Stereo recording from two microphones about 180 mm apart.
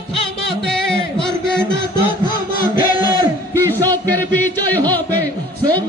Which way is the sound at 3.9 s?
10° left (ahead or behind).